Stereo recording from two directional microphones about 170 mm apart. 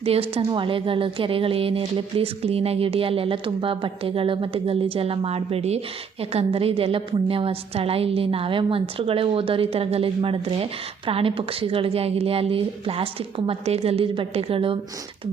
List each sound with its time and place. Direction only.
0.0 s a woman's voice: 35° right (ahead or behind)